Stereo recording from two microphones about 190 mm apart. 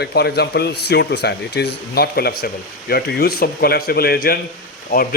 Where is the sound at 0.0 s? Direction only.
60° left (ahead or behind).